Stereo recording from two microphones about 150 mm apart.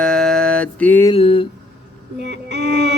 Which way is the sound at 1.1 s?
40° left (ahead or behind).